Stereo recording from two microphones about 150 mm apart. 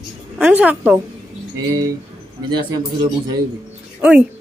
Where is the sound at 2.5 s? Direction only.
30° right (ahead or behind).